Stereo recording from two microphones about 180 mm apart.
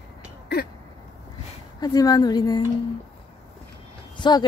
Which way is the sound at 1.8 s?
20° left (ahead or behind).